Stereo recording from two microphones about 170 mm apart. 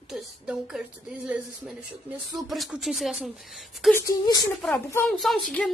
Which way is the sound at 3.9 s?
20° left (ahead or behind).